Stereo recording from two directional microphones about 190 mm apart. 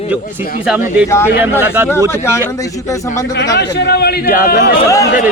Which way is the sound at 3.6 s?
60° left (ahead or behind).